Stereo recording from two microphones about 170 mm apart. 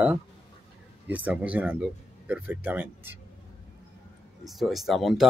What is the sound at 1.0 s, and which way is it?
Speech, 10° right (ahead or behind).